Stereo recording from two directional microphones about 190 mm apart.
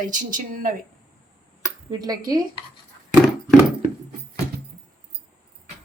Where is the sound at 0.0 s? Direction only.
45° right (ahead or behind).